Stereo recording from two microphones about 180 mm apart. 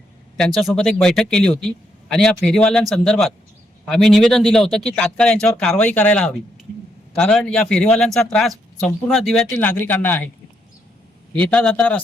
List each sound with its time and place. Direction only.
0.3 s speech: centre (ahead or behind)
11.3 s a man's voice: 5° left (ahead or behind)